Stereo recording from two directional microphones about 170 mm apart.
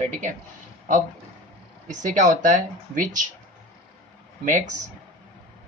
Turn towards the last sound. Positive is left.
turn(degrees=-45)  # may be behind; listen again after turning